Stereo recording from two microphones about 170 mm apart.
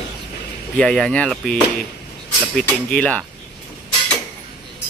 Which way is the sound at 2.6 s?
5° left (ahead or behind).